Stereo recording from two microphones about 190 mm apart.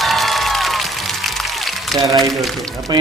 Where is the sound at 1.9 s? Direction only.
20° right (ahead or behind).